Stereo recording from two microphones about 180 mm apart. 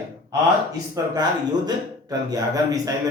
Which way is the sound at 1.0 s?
15° right (ahead or behind).